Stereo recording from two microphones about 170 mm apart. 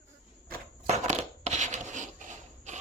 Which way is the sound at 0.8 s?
40° right (ahead or behind).